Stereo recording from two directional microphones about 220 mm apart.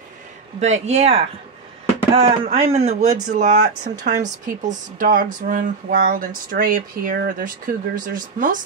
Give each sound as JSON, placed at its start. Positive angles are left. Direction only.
{"t": 0.6, "sound": "speech", "side_deg": -30}